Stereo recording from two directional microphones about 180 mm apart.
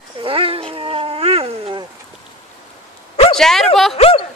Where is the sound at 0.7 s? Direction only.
30° right (ahead or behind).